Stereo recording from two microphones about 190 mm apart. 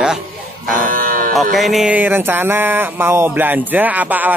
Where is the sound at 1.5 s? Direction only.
Centre (ahead or behind).